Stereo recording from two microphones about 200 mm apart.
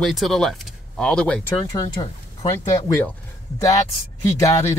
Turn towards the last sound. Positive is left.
turn(degrees=15)  # may be behind; listen again after turning